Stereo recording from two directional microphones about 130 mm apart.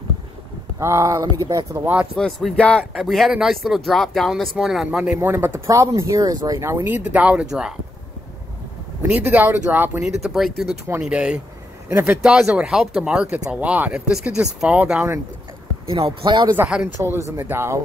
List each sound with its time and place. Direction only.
0.7 s speech: 20° right (ahead or behind)
2.1 s speech: 5° left (ahead or behind)
2.8 s speech: 5° right (ahead or behind)
9.0 s speech: 15° right (ahead or behind)
10.0 s speech: centre (ahead or behind)
11.9 s speech: 20° right (ahead or behind)
12.2 s speech: 5° right (ahead or behind)
15.9 s speech: 45° right (ahead or behind)
16.5 s speech: 10° right (ahead or behind)